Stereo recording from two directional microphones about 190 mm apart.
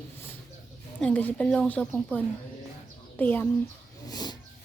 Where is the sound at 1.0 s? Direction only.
5° left (ahead or behind).